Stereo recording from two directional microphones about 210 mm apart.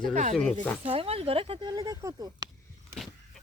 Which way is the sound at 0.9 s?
25° right (ahead or behind).